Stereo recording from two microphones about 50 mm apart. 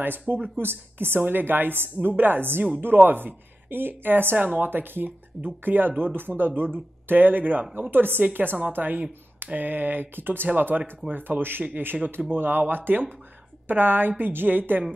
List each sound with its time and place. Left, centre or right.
0.3 s a woman's voice: right